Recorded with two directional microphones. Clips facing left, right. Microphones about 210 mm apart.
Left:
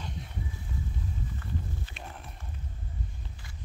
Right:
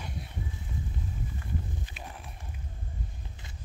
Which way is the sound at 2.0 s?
5° right (ahead or behind).